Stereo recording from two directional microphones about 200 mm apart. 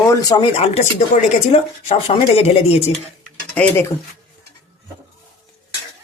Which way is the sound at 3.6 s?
5° left (ahead or behind).